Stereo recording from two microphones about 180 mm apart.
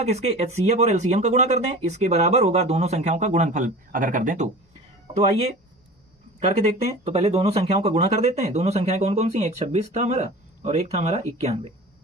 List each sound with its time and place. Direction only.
0.0 s speech: 40° right (ahead or behind)
7.0 s speech: 35° right (ahead or behind)